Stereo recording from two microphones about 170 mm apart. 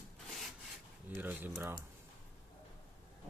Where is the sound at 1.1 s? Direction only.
10° right (ahead or behind).